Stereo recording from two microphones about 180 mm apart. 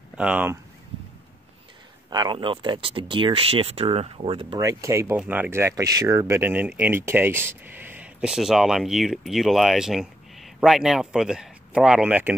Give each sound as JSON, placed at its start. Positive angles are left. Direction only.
{"t": 0.1, "sound": "speech", "side_deg": -5}
{"t": 2.0, "sound": "speech", "side_deg": -25}
{"t": 4.6, "sound": "speech", "side_deg": -15}